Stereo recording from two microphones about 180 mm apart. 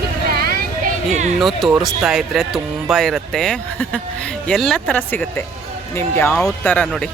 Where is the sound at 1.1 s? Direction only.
40° right (ahead or behind).